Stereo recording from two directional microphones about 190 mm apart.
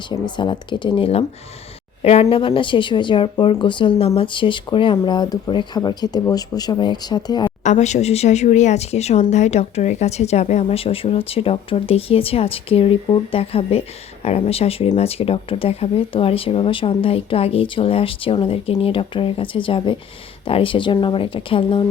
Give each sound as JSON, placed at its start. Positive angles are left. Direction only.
{"t": 0.1, "sound": "a woman's voice", "side_deg": 25}
{"t": 7.6, "sound": "speech", "side_deg": 40}